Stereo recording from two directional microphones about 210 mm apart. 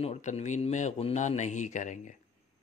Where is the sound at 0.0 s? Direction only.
35° left (ahead or behind).